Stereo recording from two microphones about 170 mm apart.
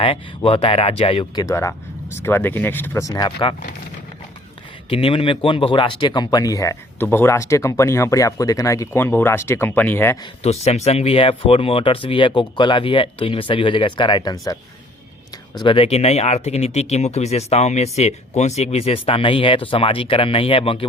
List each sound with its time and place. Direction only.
0.0 s speech: 35° left (ahead or behind)
4.9 s speech: 35° left (ahead or behind); by 10.2 s 10° left (ahead or behind)
10.4 s speech: 40° left (ahead or behind)